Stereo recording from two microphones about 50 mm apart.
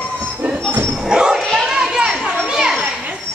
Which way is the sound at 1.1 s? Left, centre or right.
Centre.